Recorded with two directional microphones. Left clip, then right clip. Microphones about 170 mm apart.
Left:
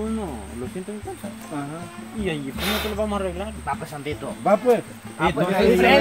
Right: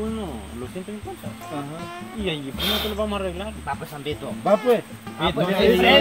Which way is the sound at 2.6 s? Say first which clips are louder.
Right 2 dB; 20° left (ahead or behind).